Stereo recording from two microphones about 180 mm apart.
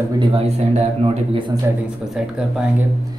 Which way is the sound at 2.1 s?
5° right (ahead or behind).